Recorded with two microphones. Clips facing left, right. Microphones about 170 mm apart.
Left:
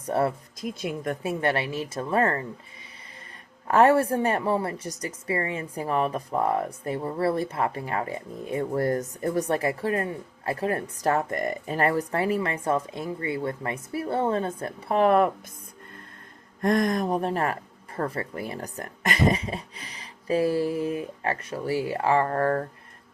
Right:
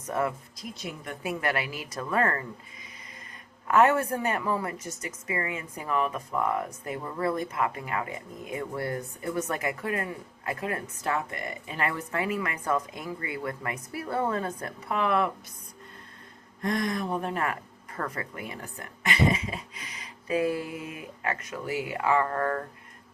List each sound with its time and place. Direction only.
0.1 s speech: 35° left (ahead or behind)
0.6 s speech: 50° left (ahead or behind)
1.2 s a woman's voice: 30° left (ahead or behind)
3.7 s speech: 35° left (ahead or behind)
14.9 s speech: 40° left (ahead or behind)
16.6 s speech: 50° left (ahead or behind)